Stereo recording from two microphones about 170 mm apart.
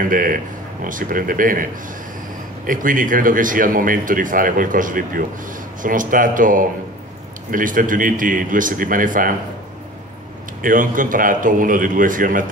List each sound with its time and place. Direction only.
0.0 s speech: 55° right (ahead or behind)
10.6 s speech: 55° right (ahead or behind)